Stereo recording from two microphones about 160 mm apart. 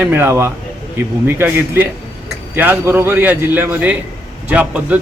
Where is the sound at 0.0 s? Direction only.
15° right (ahead or behind).